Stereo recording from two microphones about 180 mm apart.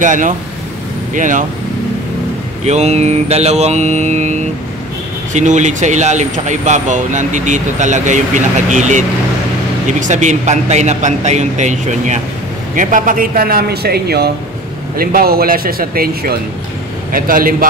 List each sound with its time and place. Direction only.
0.0 s speech: 45° right (ahead or behind)
2.6 s a man's voice: 40° right (ahead or behind)